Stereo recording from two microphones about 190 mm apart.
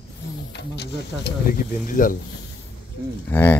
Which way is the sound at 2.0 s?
45° left (ahead or behind).